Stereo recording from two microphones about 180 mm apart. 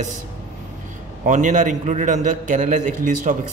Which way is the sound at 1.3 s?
45° right (ahead or behind).